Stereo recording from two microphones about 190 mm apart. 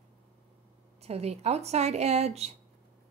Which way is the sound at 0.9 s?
35° right (ahead or behind).